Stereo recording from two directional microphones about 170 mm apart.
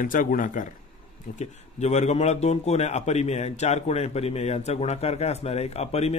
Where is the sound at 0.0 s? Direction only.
55° left (ahead or behind).